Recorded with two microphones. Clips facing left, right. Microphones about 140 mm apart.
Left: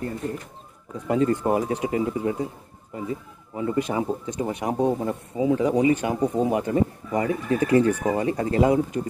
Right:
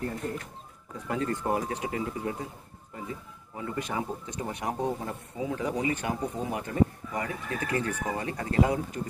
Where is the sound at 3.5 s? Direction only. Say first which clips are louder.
Left 8 dB; 20° left (ahead or behind).